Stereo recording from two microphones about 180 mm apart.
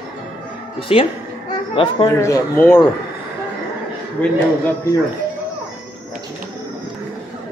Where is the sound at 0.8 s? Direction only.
30° left (ahead or behind).